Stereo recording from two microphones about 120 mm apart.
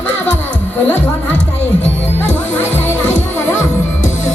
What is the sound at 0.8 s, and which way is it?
Music, 15° left (ahead or behind).